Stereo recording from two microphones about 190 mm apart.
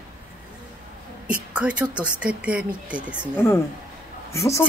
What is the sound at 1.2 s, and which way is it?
Speech, 5° right (ahead or behind).